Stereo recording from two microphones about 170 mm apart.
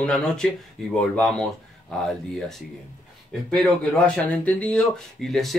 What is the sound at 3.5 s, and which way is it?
Speech, 5° left (ahead or behind).